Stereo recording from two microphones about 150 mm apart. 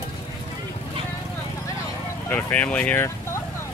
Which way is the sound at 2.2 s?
10° left (ahead or behind).